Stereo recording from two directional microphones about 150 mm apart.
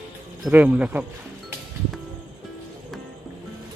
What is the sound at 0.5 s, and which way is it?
Speech, 10° right (ahead or behind).